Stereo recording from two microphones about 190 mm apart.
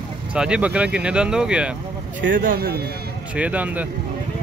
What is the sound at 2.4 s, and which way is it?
Speech, 50° right (ahead or behind).